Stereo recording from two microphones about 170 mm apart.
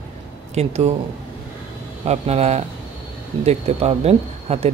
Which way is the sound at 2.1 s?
40° right (ahead or behind).